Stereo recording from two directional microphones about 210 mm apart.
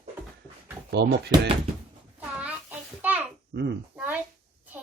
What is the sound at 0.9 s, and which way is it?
Speech, 55° right (ahead or behind).